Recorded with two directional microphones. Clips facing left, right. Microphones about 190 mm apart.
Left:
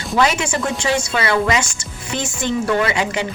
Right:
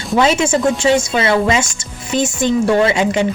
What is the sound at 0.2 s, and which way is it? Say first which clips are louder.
Speech: right 5 dB; 25° right (ahead or behind).